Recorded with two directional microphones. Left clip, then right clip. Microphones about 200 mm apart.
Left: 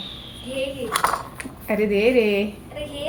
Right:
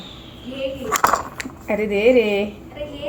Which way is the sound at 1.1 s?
60° right (ahead or behind).